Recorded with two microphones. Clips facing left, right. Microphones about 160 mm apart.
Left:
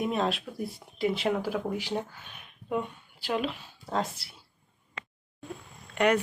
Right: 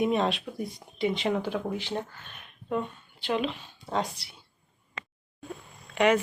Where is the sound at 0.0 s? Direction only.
Centre (ahead or behind).